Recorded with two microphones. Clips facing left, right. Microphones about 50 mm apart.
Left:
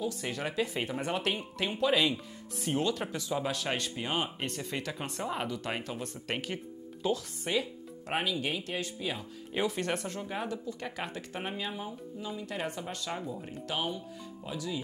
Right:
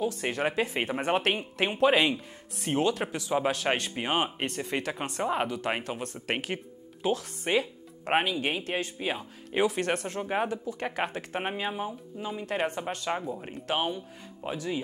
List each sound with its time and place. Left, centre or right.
0.0 s speech: right